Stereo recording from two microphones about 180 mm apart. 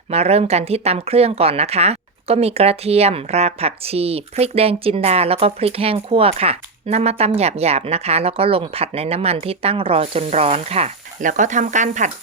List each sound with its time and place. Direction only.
0.1 s speech: 35° right (ahead or behind)